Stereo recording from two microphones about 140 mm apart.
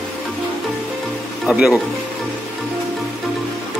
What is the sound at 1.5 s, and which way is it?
Speech, 5° right (ahead or behind).